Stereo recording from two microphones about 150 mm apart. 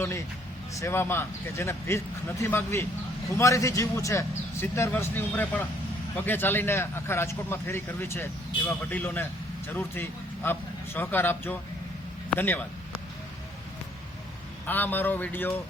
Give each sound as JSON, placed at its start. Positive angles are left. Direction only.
{"t": 0.7, "sound": "a man's voice", "side_deg": 20}
{"t": 14.7, "sound": "a man's voice", "side_deg": 10}